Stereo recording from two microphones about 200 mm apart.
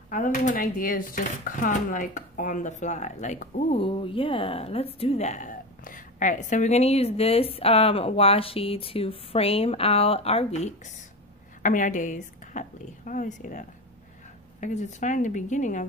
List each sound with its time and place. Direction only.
0.1 s speech: 40° left (ahead or behind)
3.8 s a woman's voice: 25° left (ahead or behind)